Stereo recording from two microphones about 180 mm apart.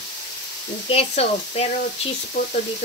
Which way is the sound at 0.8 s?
35° left (ahead or behind).